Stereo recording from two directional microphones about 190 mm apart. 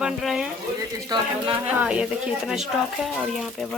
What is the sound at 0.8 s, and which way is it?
Speech, 20° right (ahead or behind).